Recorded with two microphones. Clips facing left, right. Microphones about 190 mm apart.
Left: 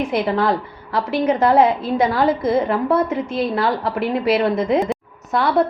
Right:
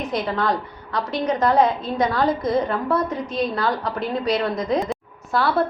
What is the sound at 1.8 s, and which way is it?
Speech, 25° left (ahead or behind).